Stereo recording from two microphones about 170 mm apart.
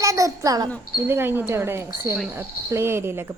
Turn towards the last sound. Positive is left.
turn(degrees=-15)  # may be behind; listen again after turning